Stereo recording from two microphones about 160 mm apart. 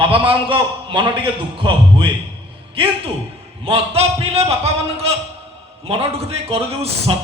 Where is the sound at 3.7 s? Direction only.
40° right (ahead or behind).